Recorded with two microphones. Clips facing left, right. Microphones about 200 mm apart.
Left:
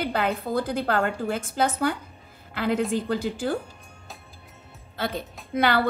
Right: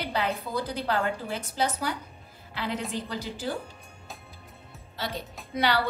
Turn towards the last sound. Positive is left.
turn(degrees=50)  # may be behind; listen again after turning